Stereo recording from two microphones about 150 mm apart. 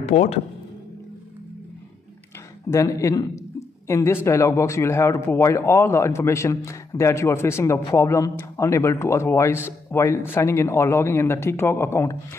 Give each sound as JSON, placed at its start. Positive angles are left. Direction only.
{"t": 0.0, "sound": "speech", "side_deg": 50}
{"t": 2.7, "sound": "a man's voice", "side_deg": 20}